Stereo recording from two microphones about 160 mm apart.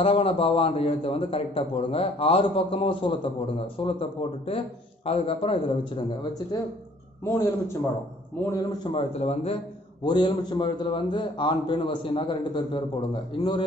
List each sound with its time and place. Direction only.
0.0 s a man's voice: 35° left (ahead or behind)
7.2 s a man's voice: 15° left (ahead or behind)
8.8 s a man's voice: 40° left (ahead or behind)
10.0 s a man's voice: 30° left (ahead or behind)